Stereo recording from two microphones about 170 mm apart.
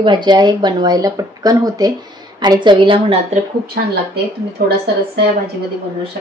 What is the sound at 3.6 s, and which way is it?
Speech, 65° right (ahead or behind).